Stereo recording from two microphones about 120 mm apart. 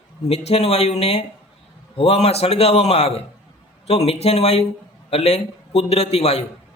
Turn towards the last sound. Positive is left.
turn(degrees=60)  # may be behind; listen again after turning